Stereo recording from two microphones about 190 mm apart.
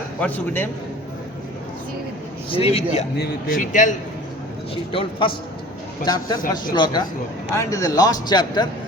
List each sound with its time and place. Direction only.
0.2 s a man's voice: 10° left (ahead or behind)
2.5 s a man's voice: 30° left (ahead or behind)
4.7 s a man's voice: 30° left (ahead or behind)